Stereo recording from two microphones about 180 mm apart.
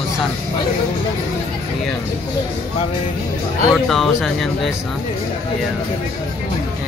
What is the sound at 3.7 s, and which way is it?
Speech, centre (ahead or behind).